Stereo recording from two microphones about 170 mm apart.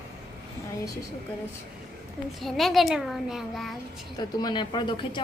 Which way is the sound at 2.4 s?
Centre (ahead or behind).